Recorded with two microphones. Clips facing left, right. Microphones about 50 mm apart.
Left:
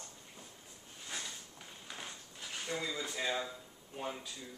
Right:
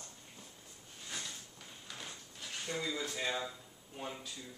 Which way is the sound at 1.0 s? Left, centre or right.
Centre.